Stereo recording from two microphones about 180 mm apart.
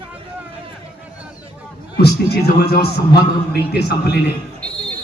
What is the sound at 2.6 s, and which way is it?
A man's voice, 60° left (ahead or behind).